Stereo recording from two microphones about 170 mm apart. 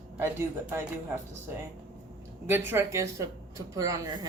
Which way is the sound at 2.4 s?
15° right (ahead or behind).